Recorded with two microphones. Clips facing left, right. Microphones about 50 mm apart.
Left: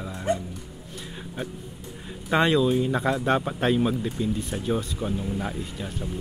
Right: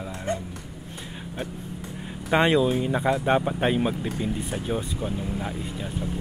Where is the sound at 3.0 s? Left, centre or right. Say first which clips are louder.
Right 1 dB; centre.